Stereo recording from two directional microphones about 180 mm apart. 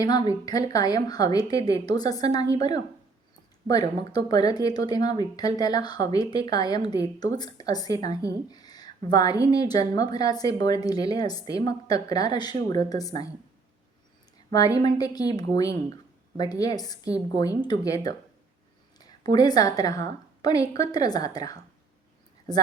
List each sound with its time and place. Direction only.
0.0 s speech: 20° left (ahead or behind)
14.5 s speech: 20° left (ahead or behind)
19.3 s speech: 20° left (ahead or behind)